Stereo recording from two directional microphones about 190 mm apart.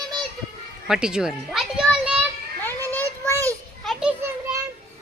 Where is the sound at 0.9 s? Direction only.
5° right (ahead or behind).